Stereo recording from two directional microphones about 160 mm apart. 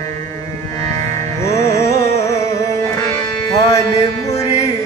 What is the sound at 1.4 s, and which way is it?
Music, 20° left (ahead or behind).